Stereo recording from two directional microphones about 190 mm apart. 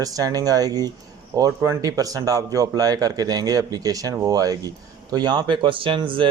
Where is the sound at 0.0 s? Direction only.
20° right (ahead or behind).